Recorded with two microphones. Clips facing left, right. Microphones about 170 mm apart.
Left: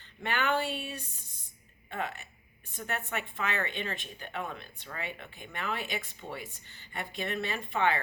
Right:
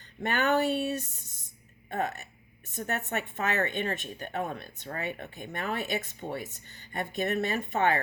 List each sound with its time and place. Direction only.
0.2 s speech: 45° right (ahead or behind)